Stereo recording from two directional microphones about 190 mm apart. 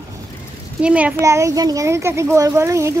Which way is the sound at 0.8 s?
5° right (ahead or behind).